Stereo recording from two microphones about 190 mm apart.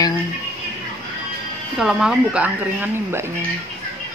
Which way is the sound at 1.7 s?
Centre (ahead or behind).